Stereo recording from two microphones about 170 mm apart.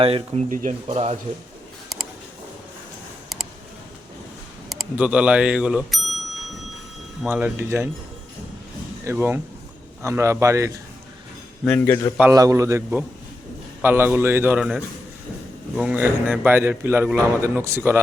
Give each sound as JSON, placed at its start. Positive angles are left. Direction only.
{"t": 0.0, "sound": "speech", "side_deg": -35}
{"t": 0.5, "sound": "speech", "side_deg": -45}
{"t": 4.7, "sound": "a man's voice", "side_deg": -5}
{"t": 7.3, "sound": "a man's voice", "side_deg": -10}
{"t": 9.0, "sound": "a man's voice", "side_deg": -15}
{"t": 11.6, "sound": "a man's voice", "side_deg": 10}
{"t": 12.3, "sound": "a man's voice", "side_deg": -20}